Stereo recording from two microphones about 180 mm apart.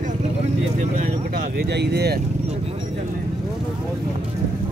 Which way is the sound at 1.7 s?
65° right (ahead or behind).